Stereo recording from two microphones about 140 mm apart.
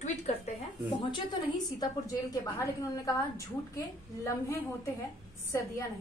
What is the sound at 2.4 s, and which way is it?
A woman's voice, 25° left (ahead or behind).